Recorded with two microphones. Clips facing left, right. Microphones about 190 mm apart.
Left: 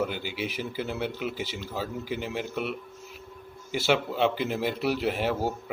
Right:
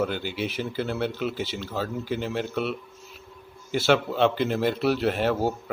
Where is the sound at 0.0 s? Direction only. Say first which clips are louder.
Right 3 dB; 10° left (ahead or behind).